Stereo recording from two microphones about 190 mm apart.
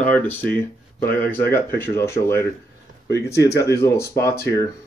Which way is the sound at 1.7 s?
15° left (ahead or behind).